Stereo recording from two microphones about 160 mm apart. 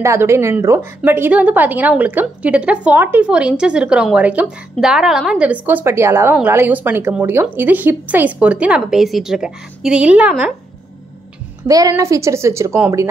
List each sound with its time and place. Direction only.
0.0 s a woman's voice: 15° right (ahead or behind)
11.6 s a woman's voice: 20° right (ahead or behind)